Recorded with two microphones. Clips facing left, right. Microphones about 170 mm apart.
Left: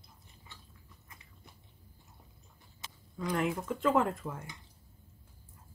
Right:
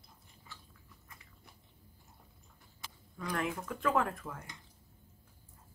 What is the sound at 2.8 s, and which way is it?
Speech, 25° left (ahead or behind).